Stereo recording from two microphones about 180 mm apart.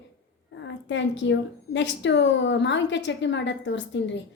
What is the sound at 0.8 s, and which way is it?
A woman's voice, 85° left.